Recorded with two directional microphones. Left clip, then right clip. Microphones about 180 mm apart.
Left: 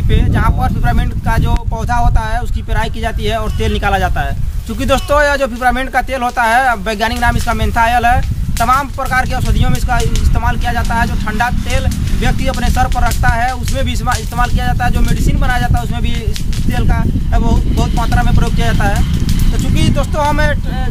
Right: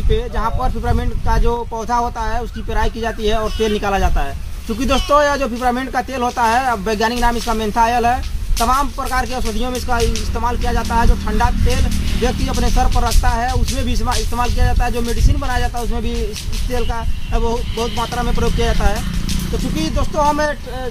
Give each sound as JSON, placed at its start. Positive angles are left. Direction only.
{"t": 0.1, "sound": "speech", "side_deg": 35}
{"t": 18.4, "sound": "speech", "side_deg": 30}